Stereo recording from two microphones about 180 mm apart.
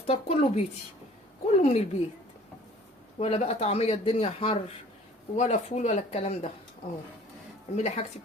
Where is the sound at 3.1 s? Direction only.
35° left (ahead or behind).